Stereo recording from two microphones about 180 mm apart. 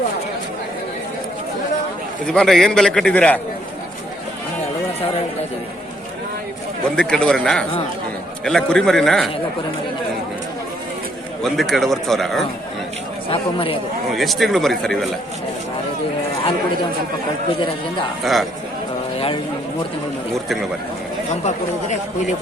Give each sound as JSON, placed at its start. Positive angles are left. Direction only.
{"t": 2.2, "sound": "a man's voice", "side_deg": 5}
{"t": 6.8, "sound": "a man's voice", "side_deg": 5}
{"t": 11.4, "sound": "a man's voice", "side_deg": 0}
{"t": 13.3, "sound": "speech", "side_deg": 30}
{"t": 14.1, "sound": "a man's voice", "side_deg": 0}
{"t": 18.2, "sound": "a man's voice", "side_deg": 0}
{"t": 20.3, "sound": "a man's voice", "side_deg": 0}
{"t": 21.4, "sound": "speech", "side_deg": 40}